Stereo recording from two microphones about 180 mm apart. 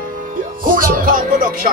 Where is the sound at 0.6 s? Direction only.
50° right (ahead or behind).